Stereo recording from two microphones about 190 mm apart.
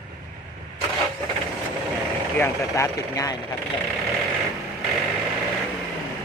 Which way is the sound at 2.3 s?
15° left (ahead or behind).